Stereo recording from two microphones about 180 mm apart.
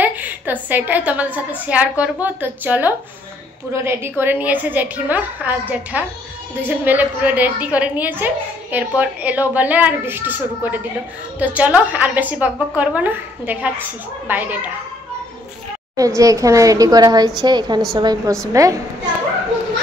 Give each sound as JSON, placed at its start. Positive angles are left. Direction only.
{"t": 0.0, "sound": "a woman's voice", "side_deg": -10}
{"t": 16.2, "sound": "a woman's voice", "side_deg": -15}